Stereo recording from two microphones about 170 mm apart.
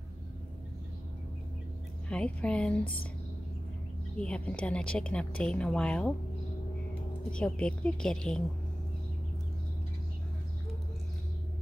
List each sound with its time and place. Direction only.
2.0 s speech: 5° left (ahead or behind)
4.2 s a woman's voice: 5° left (ahead or behind)
7.2 s a woman's voice: 5° left (ahead or behind)